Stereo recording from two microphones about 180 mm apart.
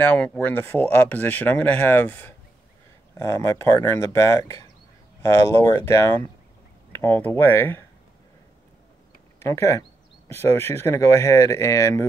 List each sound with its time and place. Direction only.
0.0 s speech: 5° left (ahead or behind)
9.4 s speech: 15° left (ahead or behind)